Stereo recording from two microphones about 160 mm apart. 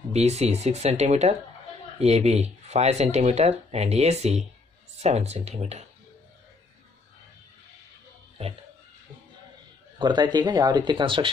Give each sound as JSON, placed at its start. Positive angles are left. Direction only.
{"t": 0.1, "sound": "speech", "side_deg": -45}
{"t": 9.9, "sound": "speech", "side_deg": -30}